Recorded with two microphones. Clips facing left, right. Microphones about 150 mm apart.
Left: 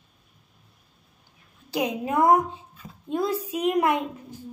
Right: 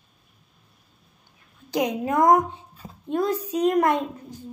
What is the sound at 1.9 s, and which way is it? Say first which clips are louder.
Speech: right 1 dB; 10° left (ahead or behind).